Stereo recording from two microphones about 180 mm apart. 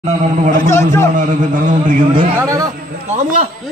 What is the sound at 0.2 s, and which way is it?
Speech, 40° right (ahead or behind).